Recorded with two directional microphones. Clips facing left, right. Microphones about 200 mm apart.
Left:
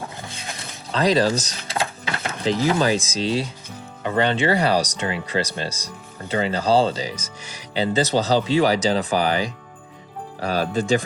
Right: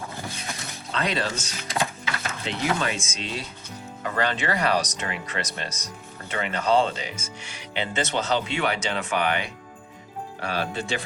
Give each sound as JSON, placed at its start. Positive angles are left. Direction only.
{"t": 0.9, "sound": "speech", "side_deg": 35}